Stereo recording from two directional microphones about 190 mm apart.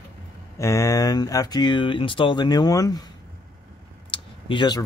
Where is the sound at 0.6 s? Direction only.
15° left (ahead or behind).